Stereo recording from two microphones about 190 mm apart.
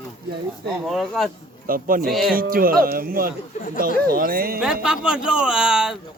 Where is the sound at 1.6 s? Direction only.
50° right (ahead or behind).